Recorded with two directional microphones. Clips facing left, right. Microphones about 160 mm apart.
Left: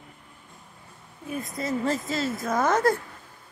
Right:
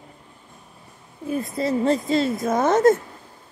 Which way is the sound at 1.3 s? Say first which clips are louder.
Right 6 dB; 30° right (ahead or behind).